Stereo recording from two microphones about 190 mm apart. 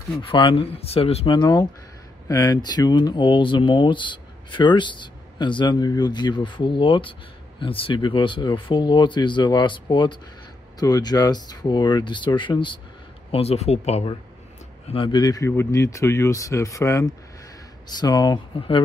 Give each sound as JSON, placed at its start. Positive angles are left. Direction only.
{"t": 0.2, "sound": "speech", "side_deg": 25}